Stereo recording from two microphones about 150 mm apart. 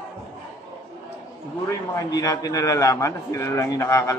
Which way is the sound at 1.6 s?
20° left (ahead or behind).